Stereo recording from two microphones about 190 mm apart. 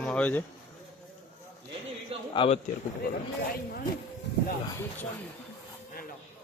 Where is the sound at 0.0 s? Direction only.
5° left (ahead or behind).